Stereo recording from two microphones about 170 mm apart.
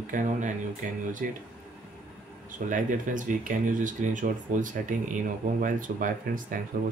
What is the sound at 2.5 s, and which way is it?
Speech, 50° right (ahead or behind).